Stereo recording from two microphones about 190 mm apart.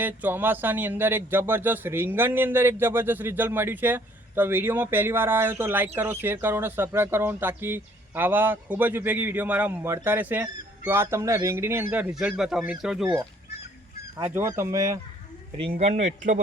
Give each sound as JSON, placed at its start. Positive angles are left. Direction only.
{"t": 0.0, "sound": "speech", "side_deg": -10}
{"t": 14.2, "sound": "speech", "side_deg": -10}
{"t": 15.8, "sound": "speech", "side_deg": -35}